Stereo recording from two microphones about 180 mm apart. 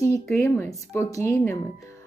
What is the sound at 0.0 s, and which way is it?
A woman's voice, 15° left (ahead or behind).